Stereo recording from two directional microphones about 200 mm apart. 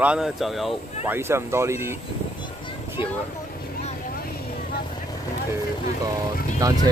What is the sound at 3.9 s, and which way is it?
Vehicle, 45° left (ahead or behind).